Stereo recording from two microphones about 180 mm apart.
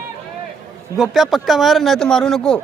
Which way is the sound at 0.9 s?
Centre (ahead or behind).